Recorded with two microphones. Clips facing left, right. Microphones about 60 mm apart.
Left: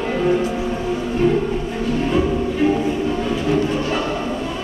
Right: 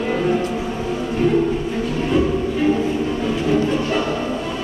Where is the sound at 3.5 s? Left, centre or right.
Centre.